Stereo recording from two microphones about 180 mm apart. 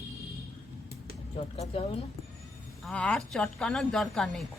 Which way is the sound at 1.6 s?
30° left (ahead or behind).